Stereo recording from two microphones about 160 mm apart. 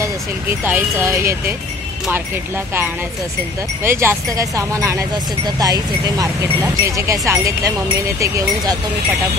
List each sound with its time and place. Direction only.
0.0 s speech: 15° right (ahead or behind)